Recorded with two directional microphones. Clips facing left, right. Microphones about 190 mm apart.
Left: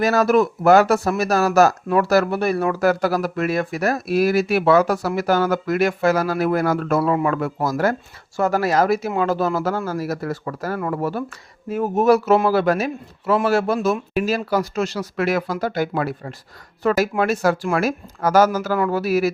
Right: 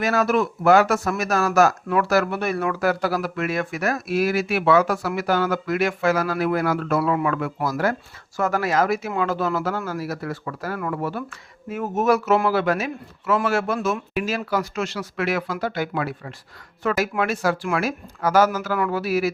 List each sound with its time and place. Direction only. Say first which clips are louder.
0.0 s speech: left 4 dB; 40° left (ahead or behind)